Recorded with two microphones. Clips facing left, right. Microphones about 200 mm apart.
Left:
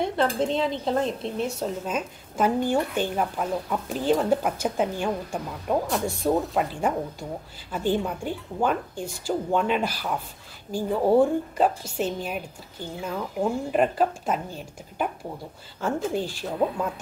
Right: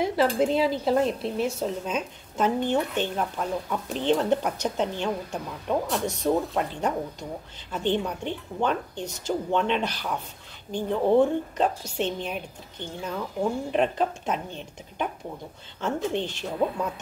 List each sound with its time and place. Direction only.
0.0 s a woman's voice: 5° right (ahead or behind)